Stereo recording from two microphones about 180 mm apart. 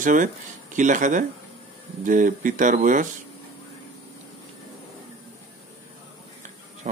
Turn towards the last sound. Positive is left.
turn(degrees=-45)  # may be behind; listen again after turning